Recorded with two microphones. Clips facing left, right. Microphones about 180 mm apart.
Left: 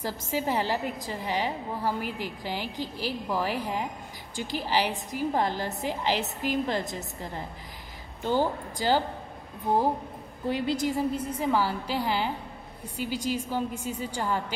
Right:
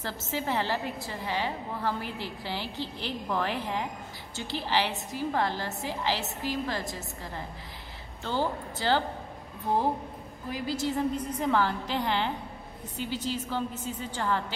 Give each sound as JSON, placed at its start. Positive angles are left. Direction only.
{"t": 0.0, "sound": "a woman's voice", "side_deg": 10}
{"t": 10.5, "sound": "a woman's voice", "side_deg": 25}
{"t": 10.9, "sound": "a woman's voice", "side_deg": 10}